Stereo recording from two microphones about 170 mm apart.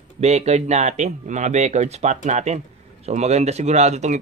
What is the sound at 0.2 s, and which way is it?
Speech, 40° right (ahead or behind).